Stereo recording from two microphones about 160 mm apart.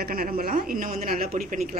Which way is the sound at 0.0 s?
65° right (ahead or behind).